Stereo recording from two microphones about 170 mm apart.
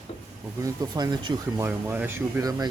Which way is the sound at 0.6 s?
25° right (ahead or behind).